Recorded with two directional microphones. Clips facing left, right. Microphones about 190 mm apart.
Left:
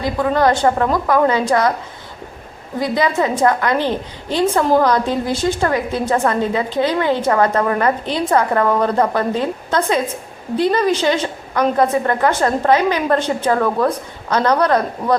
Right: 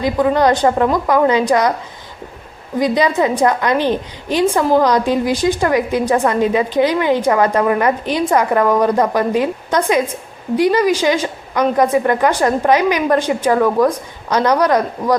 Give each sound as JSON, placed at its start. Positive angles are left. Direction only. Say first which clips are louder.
{"t": 0.0, "sound": "a woman's voice", "louder": "right 2 dB", "side_deg": -20}
{"t": 2.7, "sound": "a woman's voice", "louder": "right 3 dB", "side_deg": -20}